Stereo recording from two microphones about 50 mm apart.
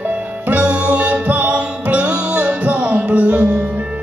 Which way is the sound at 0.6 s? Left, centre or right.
Right.